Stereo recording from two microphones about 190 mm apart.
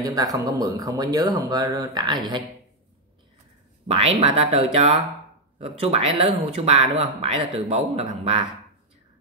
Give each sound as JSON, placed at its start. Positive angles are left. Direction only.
{"t": 0.0, "sound": "speech", "side_deg": -20}
{"t": 3.8, "sound": "speech", "side_deg": -30}